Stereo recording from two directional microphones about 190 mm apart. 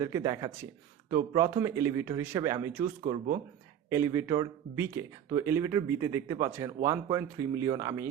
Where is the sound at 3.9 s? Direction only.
15° right (ahead or behind).